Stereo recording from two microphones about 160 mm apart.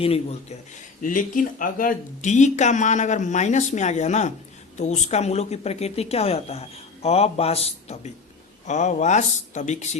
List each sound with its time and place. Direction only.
0.0 s a woman's voice: 40° left (ahead or behind)
1.0 s a woman's voice: 55° left (ahead or behind)